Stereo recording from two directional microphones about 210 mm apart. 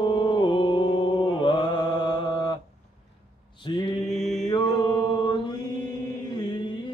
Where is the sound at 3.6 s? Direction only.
20° left (ahead or behind).